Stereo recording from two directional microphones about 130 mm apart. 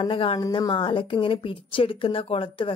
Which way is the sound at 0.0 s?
45° left (ahead or behind).